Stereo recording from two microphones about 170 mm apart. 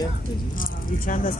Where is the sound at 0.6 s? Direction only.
50° left (ahead or behind).